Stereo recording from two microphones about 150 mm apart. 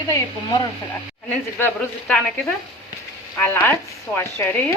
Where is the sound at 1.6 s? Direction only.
10° left (ahead or behind).